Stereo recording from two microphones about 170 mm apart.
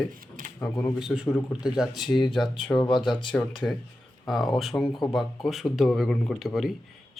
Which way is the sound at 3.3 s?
5° left (ahead or behind).